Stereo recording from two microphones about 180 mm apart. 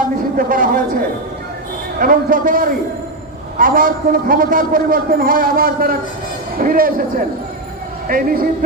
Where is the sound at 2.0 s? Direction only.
50° right (ahead or behind).